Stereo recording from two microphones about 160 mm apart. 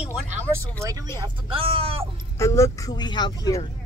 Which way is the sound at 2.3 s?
15° left (ahead or behind).